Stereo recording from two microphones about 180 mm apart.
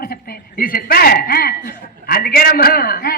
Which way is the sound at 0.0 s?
55° left (ahead or behind).